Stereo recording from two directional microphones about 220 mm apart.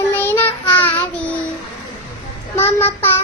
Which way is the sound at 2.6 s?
10° left (ahead or behind).